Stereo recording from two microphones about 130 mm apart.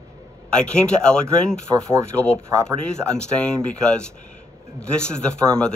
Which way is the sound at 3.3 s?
5° left (ahead or behind).